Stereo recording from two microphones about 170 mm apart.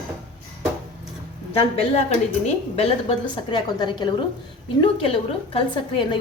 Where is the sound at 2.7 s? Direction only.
35° left (ahead or behind).